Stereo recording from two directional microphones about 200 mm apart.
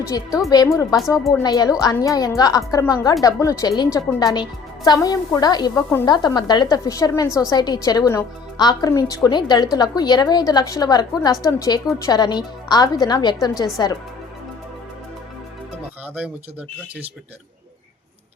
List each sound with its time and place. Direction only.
0.1 s a woman's voice: 15° left (ahead or behind)
4.9 s a woman's voice: 15° left (ahead or behind)